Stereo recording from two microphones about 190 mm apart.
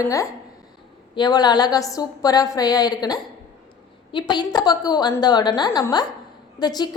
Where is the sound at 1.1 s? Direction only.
20° left (ahead or behind).